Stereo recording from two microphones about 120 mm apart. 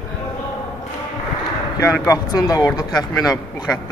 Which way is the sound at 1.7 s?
25° left (ahead or behind).